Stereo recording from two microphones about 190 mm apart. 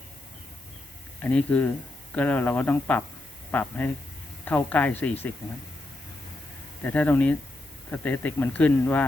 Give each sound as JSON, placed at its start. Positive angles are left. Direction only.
{"t": 1.2, "sound": "speech", "side_deg": 5}
{"t": 6.8, "sound": "speech", "side_deg": 10}